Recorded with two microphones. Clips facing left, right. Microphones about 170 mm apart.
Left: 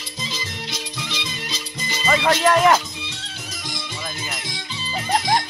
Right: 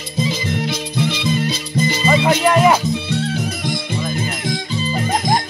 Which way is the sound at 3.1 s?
60° right (ahead or behind).